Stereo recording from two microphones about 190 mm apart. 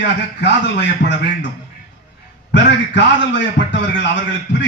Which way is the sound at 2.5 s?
70° left (ahead or behind).